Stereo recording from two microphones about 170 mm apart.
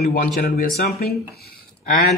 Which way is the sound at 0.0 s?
60° left (ahead or behind).